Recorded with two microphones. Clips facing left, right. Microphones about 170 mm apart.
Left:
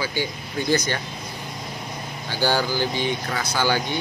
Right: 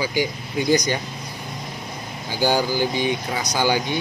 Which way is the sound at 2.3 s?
15° right (ahead or behind).